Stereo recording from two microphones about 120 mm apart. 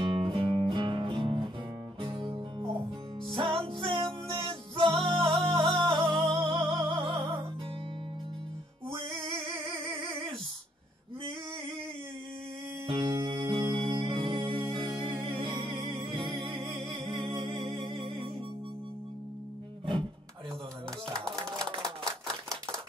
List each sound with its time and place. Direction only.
0.0 s music: 45° right (ahead or behind)
9.0 s a sound: 45° right (ahead or behind)
12.8 s music: 45° right (ahead or behind)
21.2 s music: 5° left (ahead or behind)